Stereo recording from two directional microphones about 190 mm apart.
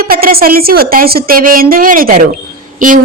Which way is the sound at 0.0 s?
50° right (ahead or behind).